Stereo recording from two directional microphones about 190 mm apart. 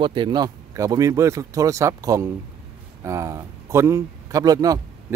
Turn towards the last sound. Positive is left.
turn(degrees=-20)  # may be behind; listen again after turning